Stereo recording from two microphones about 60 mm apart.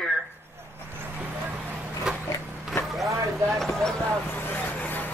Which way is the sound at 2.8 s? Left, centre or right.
Centre.